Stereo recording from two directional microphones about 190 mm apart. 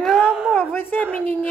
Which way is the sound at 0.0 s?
Centre (ahead or behind).